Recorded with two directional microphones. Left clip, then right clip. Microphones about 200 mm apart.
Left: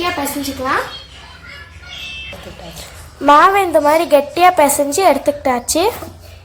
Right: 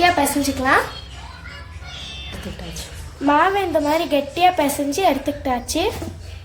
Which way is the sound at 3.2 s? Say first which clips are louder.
Left 7 dB; 20° left (ahead or behind).